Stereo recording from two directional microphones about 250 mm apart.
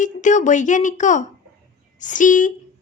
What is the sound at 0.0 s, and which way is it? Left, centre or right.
Speech, left.